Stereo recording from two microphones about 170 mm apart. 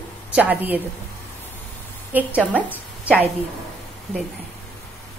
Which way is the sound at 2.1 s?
10° right (ahead or behind).